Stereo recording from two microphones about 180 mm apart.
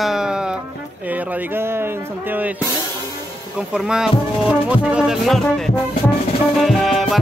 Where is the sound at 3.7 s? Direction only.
5° right (ahead or behind).